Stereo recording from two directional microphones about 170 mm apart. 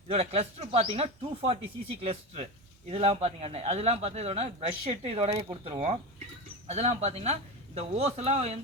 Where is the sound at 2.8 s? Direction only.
40° right (ahead or behind).